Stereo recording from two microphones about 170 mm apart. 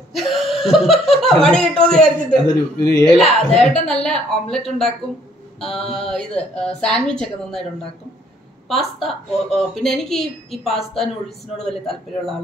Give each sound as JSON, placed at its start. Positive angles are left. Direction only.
{"t": 0.1, "sound": "speech", "side_deg": 0}
{"t": 2.4, "sound": "speech", "side_deg": 20}
{"t": 3.2, "sound": "speech", "side_deg": 0}
{"t": 8.6, "sound": "speech", "side_deg": 0}